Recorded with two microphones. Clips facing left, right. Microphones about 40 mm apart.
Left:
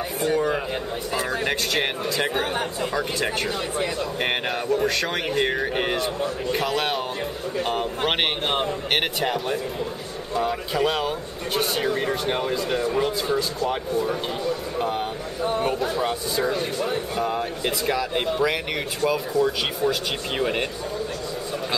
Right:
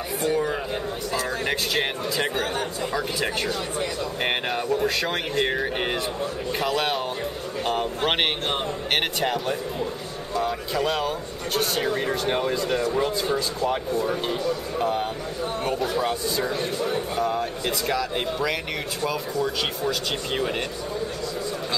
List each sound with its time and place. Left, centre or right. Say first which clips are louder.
0.2 s speech: left 2 dB; centre
4.7 s speech: left 1 dB; centre
14.8 s speech: right 1 dB; centre